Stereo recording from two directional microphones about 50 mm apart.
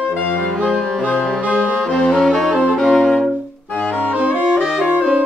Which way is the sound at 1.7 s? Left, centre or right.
Centre.